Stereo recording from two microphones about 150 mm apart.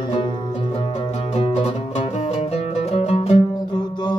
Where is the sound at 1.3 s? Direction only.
45° left (ahead or behind).